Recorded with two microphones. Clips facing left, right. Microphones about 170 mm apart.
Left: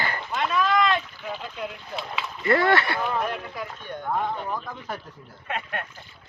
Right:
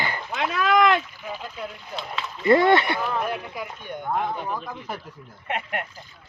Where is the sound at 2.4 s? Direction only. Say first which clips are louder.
Right 4 dB; 20° right (ahead or behind).